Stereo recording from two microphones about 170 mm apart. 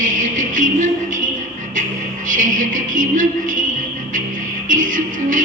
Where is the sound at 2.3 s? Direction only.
50° right (ahead or behind).